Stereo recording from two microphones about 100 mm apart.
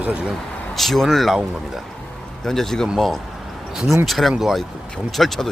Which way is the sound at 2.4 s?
5° left (ahead or behind).